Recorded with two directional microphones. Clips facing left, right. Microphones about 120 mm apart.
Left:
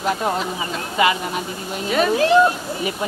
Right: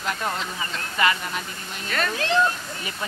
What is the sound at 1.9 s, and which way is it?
Speech, 10° left (ahead or behind).